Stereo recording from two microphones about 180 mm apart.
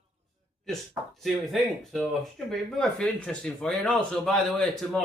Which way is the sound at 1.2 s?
Centre (ahead or behind).